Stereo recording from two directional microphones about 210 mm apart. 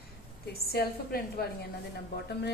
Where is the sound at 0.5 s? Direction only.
45° left (ahead or behind).